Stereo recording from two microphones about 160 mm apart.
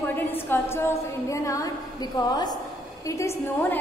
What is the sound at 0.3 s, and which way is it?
A woman's voice, 15° left (ahead or behind).